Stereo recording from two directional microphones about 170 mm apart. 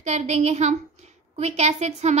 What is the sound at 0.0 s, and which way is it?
A woman's voice, 40° right (ahead or behind).